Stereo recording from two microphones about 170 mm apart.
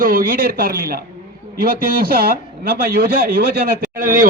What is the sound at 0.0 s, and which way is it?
Speech, 55° right (ahead or behind).